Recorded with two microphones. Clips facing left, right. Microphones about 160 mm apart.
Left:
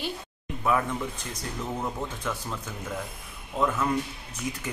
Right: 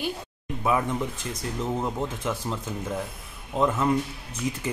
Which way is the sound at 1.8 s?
20° right (ahead or behind).